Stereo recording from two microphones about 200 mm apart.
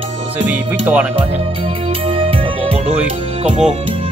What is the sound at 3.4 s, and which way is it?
Speech, 30° right (ahead or behind).